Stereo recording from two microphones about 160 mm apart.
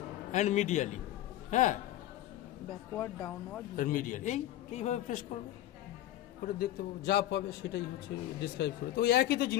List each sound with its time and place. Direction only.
0.3 s a man's voice: 45° left (ahead or behind)
2.9 s speech: 15° left (ahead or behind)
3.7 s a man's voice: 55° left (ahead or behind)
6.4 s a man's voice: 75° left (ahead or behind)